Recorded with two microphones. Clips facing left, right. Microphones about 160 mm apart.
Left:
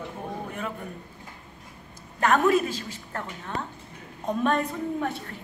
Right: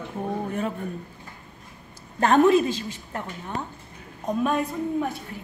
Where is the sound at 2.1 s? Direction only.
30° right (ahead or behind); by 5.1 s 10° right (ahead or behind).